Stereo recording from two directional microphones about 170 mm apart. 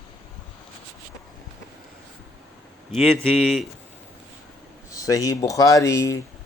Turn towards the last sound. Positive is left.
turn(degrees=20)  # may be behind; listen again after turning